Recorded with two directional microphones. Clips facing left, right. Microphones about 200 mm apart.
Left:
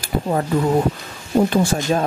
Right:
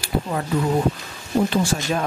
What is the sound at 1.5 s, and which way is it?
Speech, 50° left (ahead or behind).